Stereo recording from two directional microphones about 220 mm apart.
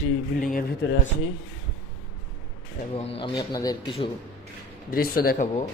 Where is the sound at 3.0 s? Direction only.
25° left (ahead or behind).